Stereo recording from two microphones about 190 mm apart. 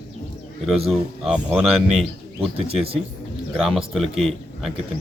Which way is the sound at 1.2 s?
5° right (ahead or behind).